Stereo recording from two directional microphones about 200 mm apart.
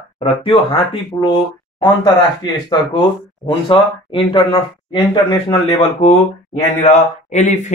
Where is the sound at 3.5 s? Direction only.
25° left (ahead or behind).